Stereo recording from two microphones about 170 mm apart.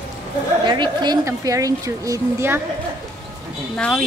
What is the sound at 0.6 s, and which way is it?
A woman's voice, 25° right (ahead or behind).